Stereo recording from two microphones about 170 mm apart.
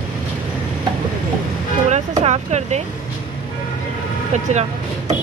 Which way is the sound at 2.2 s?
40° right (ahead or behind).